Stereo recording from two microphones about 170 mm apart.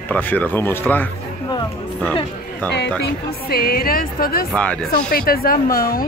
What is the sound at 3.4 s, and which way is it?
A woman's voice, 60° left (ahead or behind).